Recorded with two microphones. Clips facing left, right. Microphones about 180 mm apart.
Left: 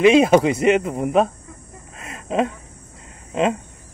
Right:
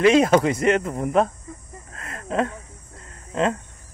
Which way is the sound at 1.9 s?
20° left (ahead or behind).